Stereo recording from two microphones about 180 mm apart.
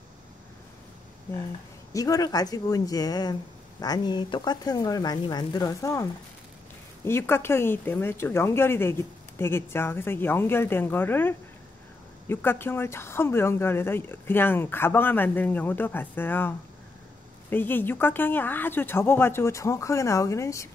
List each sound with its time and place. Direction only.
2.0 s speech: 20° left (ahead or behind)
7.1 s speech: 15° left (ahead or behind)